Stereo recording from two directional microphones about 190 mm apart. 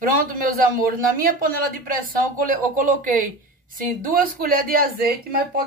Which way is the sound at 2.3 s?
45° right (ahead or behind).